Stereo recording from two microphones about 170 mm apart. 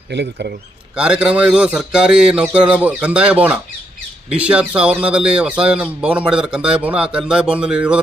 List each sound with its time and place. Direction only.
0.1 s speech: 80° right
0.9 s speech: 5° right (ahead or behind)